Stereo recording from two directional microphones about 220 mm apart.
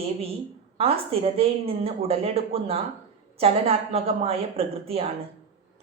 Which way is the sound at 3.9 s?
25° right (ahead or behind).